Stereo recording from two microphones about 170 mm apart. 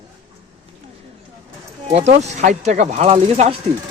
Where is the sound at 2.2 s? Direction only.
45° right (ahead or behind).